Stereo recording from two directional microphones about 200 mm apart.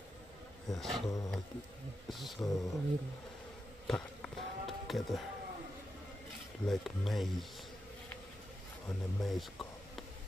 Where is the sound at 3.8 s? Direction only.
5° left (ahead or behind).